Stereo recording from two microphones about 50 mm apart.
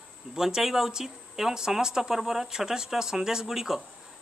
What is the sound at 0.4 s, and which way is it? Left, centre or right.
Speech, centre.